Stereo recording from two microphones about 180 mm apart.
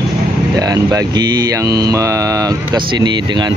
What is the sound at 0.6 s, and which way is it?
Mantra, 20° right (ahead or behind).